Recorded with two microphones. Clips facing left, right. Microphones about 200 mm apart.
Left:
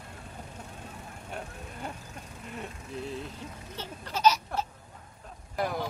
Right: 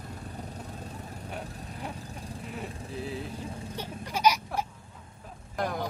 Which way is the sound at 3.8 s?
10° right (ahead or behind).